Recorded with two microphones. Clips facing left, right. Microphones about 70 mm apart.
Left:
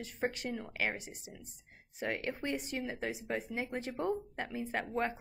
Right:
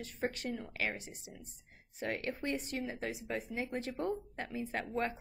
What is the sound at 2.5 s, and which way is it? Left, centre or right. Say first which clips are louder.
A woman's voice: left 1 dB; centre.